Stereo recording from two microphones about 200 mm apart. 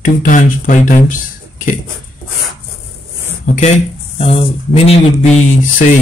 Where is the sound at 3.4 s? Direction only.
40° left (ahead or behind).